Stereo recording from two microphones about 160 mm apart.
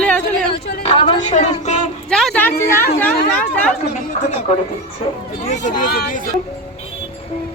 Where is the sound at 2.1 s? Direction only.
5° left (ahead or behind).